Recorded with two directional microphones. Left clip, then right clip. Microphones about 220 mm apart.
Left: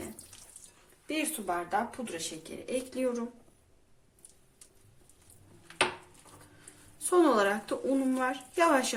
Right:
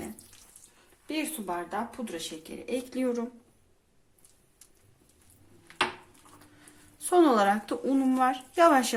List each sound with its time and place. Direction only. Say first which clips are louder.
1.0 s speech: even; 15° right (ahead or behind)
2.6 s speech: right 1 dB; 35° right (ahead or behind)
7.0 s speech: right 3 dB; 35° right (ahead or behind)